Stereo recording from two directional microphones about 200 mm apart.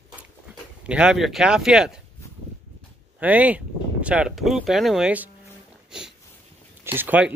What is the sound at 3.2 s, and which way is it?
Speech, 5° right (ahead or behind).